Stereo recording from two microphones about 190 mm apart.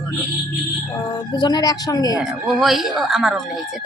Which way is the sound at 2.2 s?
Centre (ahead or behind).